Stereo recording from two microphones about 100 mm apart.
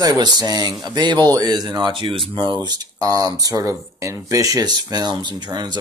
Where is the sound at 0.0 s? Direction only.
40° right (ahead or behind).